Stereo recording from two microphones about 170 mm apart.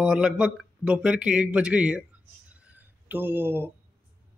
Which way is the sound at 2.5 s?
10° right (ahead or behind).